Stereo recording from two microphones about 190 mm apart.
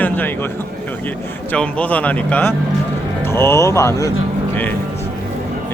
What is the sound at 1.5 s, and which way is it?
A man's voice, 5° left (ahead or behind).